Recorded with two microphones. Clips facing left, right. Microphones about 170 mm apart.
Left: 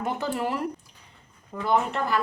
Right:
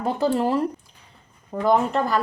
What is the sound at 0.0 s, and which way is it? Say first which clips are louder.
A woman's voice: right 6 dB; 35° right (ahead or behind).